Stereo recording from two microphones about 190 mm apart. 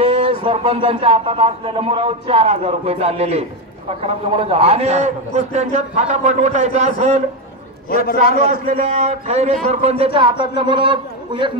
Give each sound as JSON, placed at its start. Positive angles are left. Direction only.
{"t": 0.0, "sound": "a man's voice", "side_deg": -30}
{"t": 7.9, "sound": "a man's voice", "side_deg": 50}
{"t": 8.5, "sound": "a man's voice", "side_deg": -40}